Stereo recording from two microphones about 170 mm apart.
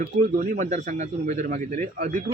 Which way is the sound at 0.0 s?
50° right (ahead or behind).